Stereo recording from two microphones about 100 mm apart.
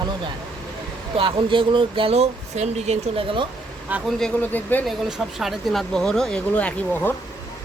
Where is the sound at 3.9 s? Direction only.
15° right (ahead or behind).